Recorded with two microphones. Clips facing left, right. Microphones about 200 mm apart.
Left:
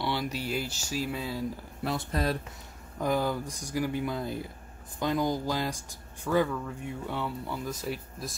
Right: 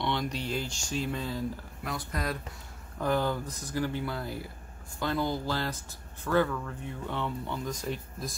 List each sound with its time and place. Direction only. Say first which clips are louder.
0.0 s speech: even; 5° left (ahead or behind)
1.8 s speech: left 6 dB; 30° left (ahead or behind)
3.0 s speech: even; 10° left (ahead or behind)